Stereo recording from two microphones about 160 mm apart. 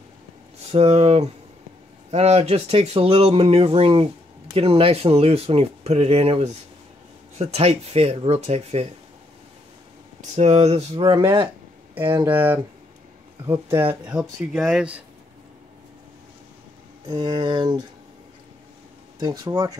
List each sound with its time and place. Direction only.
0.7 s speech: 40° right (ahead or behind)
10.2 s speech: 45° right (ahead or behind)
11.0 s speech: 30° right (ahead or behind)
12.3 s speech: 10° right (ahead or behind)
14.5 s speech: 5° right (ahead or behind)
17.1 s speech: 25° right (ahead or behind)
19.1 s speech: 25° right (ahead or behind)